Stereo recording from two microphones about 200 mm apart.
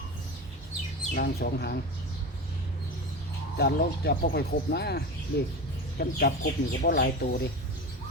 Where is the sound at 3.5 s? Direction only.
55° left (ahead or behind).